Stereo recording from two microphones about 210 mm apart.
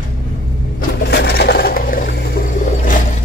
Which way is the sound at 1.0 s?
50° left (ahead or behind).